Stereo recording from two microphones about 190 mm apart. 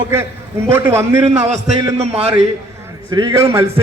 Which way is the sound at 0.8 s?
15° right (ahead or behind).